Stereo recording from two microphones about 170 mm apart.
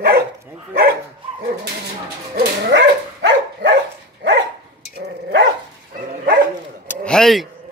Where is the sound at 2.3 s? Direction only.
90° right.